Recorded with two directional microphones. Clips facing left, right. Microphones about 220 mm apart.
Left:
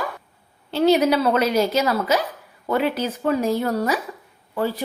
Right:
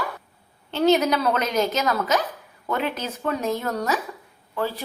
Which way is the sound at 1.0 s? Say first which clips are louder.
Left 4 dB; 10° left (ahead or behind).